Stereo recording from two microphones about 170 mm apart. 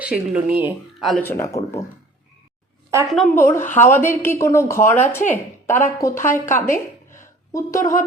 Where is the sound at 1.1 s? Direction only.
15° left (ahead or behind).